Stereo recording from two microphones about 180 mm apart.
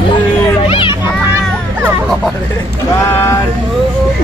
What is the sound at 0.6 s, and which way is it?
Speech, 30° left (ahead or behind).